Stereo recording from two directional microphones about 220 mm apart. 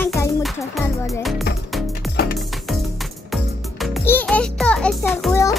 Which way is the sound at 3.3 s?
Centre (ahead or behind).